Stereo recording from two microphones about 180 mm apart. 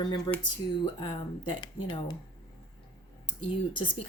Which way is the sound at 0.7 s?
25° left (ahead or behind).